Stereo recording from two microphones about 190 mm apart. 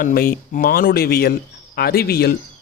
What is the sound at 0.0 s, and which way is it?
Speech, 50° left (ahead or behind).